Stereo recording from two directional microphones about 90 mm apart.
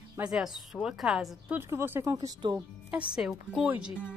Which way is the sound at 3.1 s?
5° right (ahead or behind).